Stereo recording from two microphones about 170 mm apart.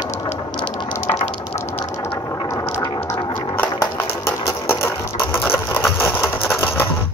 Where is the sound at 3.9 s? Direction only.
15° left (ahead or behind).